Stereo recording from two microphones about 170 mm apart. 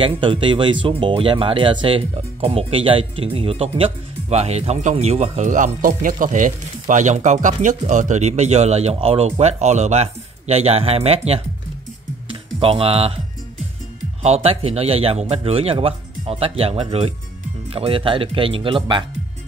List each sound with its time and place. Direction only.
0.0 s speech: 30° right (ahead or behind)
14.2 s speech: 35° right (ahead or behind)